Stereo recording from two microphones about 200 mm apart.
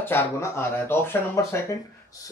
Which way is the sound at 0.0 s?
10° left (ahead or behind).